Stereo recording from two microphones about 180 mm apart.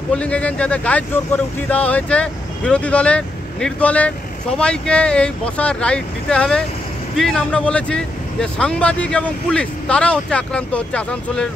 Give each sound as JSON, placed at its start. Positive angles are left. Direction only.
{"t": 0.1, "sound": "speech", "side_deg": 5}